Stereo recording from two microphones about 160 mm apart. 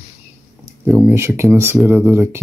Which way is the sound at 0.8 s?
15° right (ahead or behind).